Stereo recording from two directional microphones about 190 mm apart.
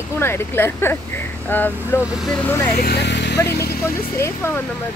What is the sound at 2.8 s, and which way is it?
Speech, 60° left (ahead or behind).